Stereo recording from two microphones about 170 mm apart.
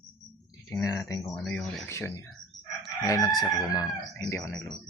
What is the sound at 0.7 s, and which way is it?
Speech, 20° left (ahead or behind).